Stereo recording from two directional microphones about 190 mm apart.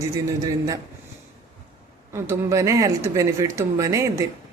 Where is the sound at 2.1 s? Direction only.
15° right (ahead or behind).